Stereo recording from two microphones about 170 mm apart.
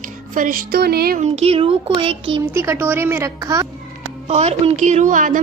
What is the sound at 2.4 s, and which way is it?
A woman's voice, 15° right (ahead or behind).